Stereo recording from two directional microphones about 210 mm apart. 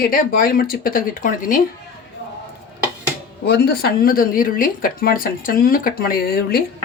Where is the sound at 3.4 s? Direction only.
50° left (ahead or behind).